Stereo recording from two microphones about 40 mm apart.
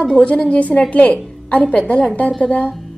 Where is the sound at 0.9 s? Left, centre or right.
Left.